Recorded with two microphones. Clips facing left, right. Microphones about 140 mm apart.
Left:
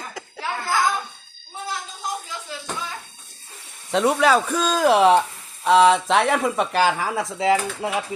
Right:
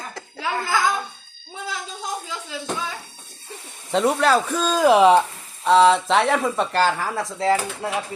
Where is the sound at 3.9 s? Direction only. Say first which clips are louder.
Even; centre (ahead or behind).